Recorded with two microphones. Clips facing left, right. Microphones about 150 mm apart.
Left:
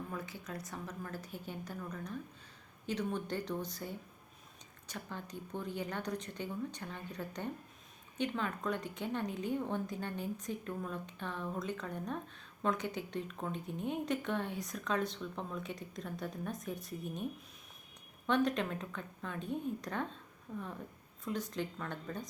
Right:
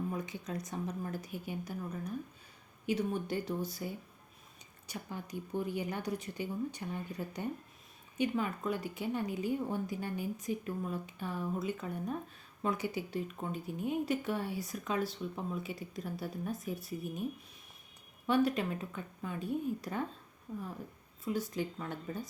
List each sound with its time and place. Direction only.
0.1 s a woman's voice: 20° right (ahead or behind)
18.3 s a woman's voice: 5° right (ahead or behind)
21.2 s a woman's voice: 5° right (ahead or behind)